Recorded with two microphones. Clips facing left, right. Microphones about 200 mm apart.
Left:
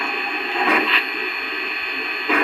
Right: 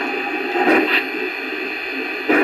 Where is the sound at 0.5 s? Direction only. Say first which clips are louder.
Right 6 dB; 40° right (ahead or behind).